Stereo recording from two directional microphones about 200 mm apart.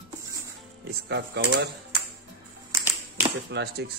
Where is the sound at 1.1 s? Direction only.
60° right (ahead or behind).